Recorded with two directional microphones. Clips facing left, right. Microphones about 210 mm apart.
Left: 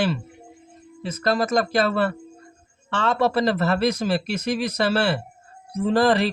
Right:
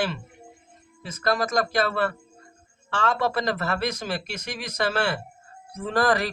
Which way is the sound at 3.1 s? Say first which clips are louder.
Left 5 dB; 30° left (ahead or behind).